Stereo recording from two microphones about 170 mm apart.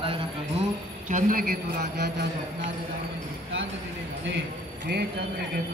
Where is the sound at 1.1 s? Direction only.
50° right (ahead or behind); by 2.3 s 75° right (ahead or behind).